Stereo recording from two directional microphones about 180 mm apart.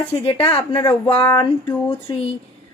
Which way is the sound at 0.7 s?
25° left (ahead or behind).